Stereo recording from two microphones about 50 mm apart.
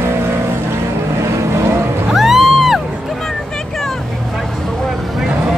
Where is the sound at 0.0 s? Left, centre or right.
Right.